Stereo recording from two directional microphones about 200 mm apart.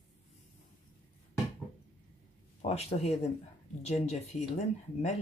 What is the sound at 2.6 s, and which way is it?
Speech, 35° left (ahead or behind).